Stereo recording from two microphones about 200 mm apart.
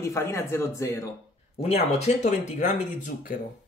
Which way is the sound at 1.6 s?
30° left (ahead or behind).